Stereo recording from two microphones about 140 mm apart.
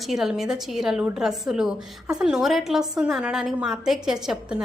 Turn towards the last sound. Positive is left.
turn(degrees=-5)  # may be behind; listen again after turning